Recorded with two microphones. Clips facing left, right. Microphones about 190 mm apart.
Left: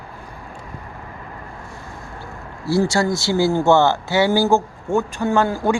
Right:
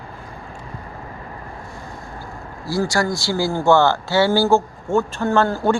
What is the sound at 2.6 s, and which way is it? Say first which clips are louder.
A man's voice: left 3 dB; 25° left (ahead or behind).